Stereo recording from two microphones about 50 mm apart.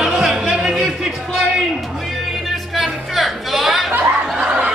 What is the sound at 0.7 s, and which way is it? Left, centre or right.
Music, centre.